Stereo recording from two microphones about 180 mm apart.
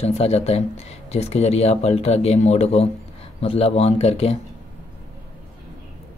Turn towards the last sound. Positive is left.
turn(degrees=35)  # may be behind; listen again after turning